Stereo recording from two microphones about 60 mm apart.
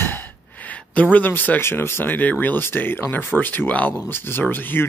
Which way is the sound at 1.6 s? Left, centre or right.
Left.